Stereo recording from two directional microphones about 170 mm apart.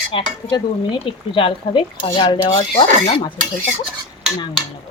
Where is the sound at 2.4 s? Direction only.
35° left (ahead or behind).